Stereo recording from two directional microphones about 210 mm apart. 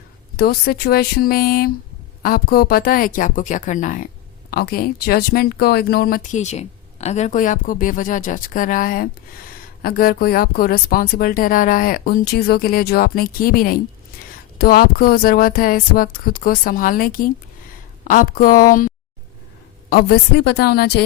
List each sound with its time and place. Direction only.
0.3 s speech: 45° left (ahead or behind)